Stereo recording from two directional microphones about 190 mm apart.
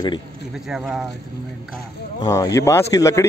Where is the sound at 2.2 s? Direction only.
15° left (ahead or behind).